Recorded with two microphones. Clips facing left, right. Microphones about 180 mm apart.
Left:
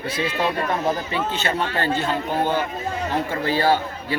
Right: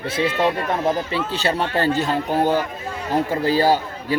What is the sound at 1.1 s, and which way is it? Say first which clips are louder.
A man's voice: right 2 dB; 35° right (ahead or behind).